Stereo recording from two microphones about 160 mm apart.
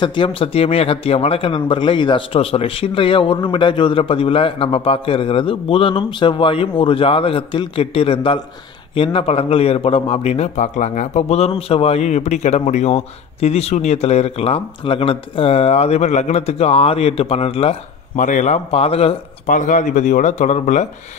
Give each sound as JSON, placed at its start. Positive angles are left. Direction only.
{"t": 0.0, "sound": "a man's voice", "side_deg": 30}
{"t": 18.1, "sound": "speech", "side_deg": 50}